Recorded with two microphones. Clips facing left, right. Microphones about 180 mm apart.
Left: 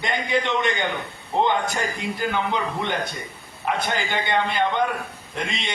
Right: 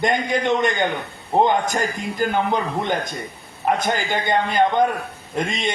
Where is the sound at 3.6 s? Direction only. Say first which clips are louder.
Right 4 dB; 45° right (ahead or behind).